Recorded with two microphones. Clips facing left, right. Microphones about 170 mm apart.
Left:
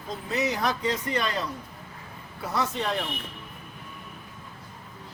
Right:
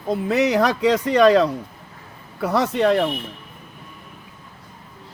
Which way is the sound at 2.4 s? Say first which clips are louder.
Right 10 dB; 70° right (ahead or behind).